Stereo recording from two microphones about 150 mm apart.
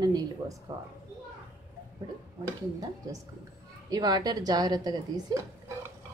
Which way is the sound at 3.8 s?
25° right (ahead or behind).